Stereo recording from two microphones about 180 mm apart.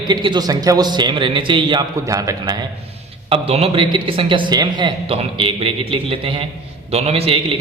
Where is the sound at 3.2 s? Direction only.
30° right (ahead or behind).